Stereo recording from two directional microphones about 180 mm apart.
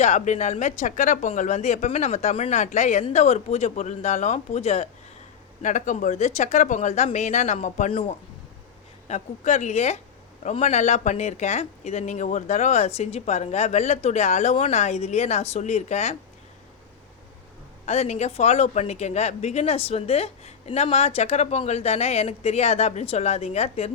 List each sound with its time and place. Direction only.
0.0 s speech: 40° left (ahead or behind)
9.0 s speech: 40° left (ahead or behind)
17.8 s speech: 35° left (ahead or behind)